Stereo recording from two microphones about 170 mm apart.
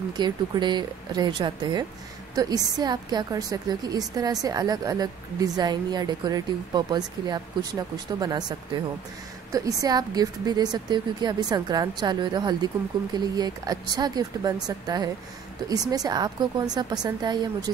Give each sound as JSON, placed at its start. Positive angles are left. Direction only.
{"t": 0.1, "sound": "a woman's voice", "side_deg": -25}